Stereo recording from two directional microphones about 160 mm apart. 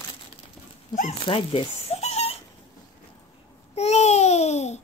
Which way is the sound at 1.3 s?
35° left (ahead or behind).